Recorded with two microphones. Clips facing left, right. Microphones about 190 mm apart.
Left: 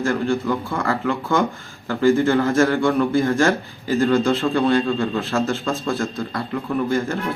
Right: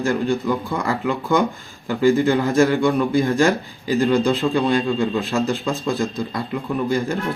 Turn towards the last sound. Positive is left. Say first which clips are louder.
# even
turn(degrees=-15)  # may be behind; listen again after turning